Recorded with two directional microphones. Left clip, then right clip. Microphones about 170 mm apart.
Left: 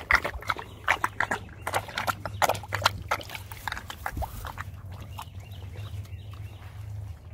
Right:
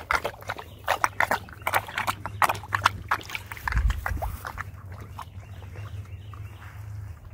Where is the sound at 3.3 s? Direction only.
35° left (ahead or behind).